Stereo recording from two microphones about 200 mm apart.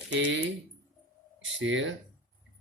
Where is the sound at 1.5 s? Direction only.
70° right (ahead or behind).